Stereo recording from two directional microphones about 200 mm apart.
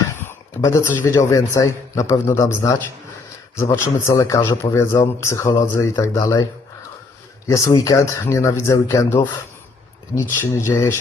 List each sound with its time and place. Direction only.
0.3 s speech: 15° left (ahead or behind)
7.4 s speech: 15° left (ahead or behind)